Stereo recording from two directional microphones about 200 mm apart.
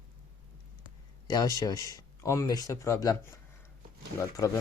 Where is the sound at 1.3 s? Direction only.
20° left (ahead or behind).